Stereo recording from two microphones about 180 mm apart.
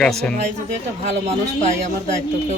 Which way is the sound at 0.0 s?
5° left (ahead or behind).